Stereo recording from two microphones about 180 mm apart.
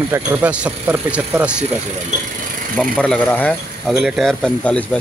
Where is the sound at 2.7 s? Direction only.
5° left (ahead or behind).